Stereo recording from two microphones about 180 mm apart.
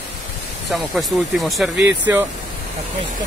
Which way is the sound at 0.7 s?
Centre (ahead or behind).